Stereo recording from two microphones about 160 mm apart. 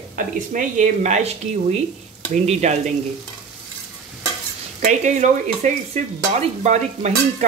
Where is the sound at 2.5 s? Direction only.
45° right (ahead or behind).